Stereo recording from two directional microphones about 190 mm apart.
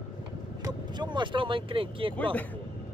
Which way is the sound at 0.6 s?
25° right (ahead or behind).